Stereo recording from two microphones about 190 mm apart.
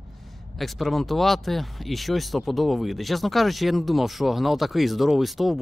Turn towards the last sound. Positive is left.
turn(degrees=0)  # may be behind; listen again after turning